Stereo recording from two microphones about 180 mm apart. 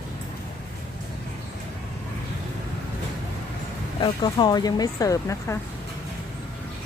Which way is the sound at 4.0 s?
25° left (ahead or behind).